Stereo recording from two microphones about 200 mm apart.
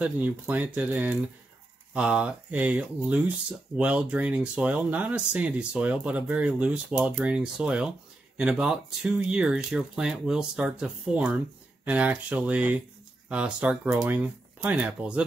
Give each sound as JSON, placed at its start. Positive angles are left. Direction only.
{"t": 0.0, "sound": "speech", "side_deg": -10}